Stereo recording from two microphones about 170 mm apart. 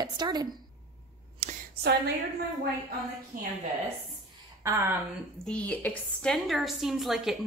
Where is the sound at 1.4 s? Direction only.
40° right (ahead or behind).